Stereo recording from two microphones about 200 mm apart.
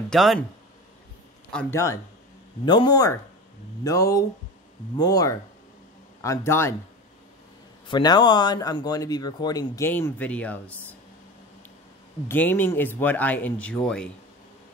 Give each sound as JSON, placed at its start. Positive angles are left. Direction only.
{"t": 0.1, "sound": "speech", "side_deg": 0}
{"t": 1.5, "sound": "speech", "side_deg": 10}
{"t": 2.6, "sound": "speech", "side_deg": 25}
{"t": 7.9, "sound": "speech", "side_deg": 20}
{"t": 12.3, "sound": "speech", "side_deg": 10}